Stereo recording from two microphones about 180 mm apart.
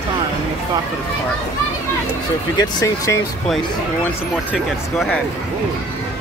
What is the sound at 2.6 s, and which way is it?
Speech, 20° left (ahead or behind).